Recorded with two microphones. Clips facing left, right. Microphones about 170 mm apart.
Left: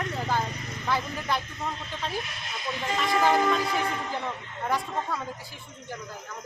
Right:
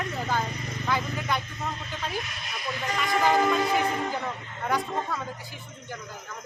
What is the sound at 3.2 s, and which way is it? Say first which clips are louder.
Speech: right 1 dB; centre (ahead or behind).